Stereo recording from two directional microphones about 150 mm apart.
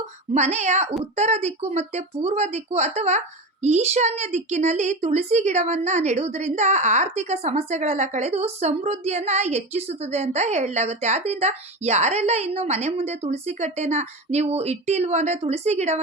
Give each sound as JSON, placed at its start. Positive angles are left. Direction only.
{"t": 0.3, "sound": "a woman's voice", "side_deg": -50}